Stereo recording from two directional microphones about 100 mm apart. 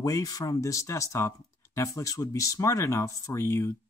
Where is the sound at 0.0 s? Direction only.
40° left (ahead or behind).